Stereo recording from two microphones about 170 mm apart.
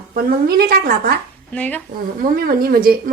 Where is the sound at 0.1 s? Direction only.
65° right (ahead or behind).